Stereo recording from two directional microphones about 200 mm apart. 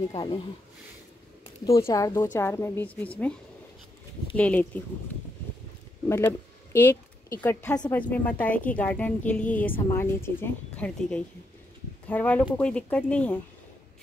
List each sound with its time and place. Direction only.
0.1 s speech: 25° left (ahead or behind)
1.8 s a woman's voice: 15° left (ahead or behind)
4.4 s a woman's voice: 10° left (ahead or behind)
6.0 s a woman's voice: 15° left (ahead or behind)